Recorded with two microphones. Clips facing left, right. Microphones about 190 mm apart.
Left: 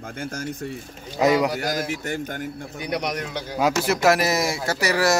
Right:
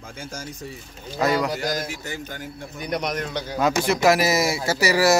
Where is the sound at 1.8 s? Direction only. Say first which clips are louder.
Left 5 dB; 55° left (ahead or behind).